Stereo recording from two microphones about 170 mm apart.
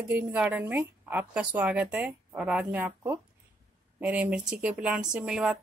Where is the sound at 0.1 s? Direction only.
10° right (ahead or behind).